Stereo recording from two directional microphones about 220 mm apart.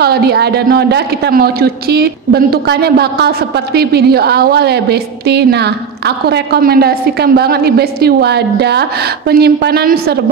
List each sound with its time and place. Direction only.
0.0 s a man's voice: 45° right (ahead or behind)